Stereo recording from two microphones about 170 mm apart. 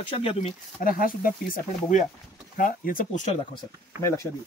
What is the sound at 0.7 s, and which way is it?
Speech, 55° left (ahead or behind).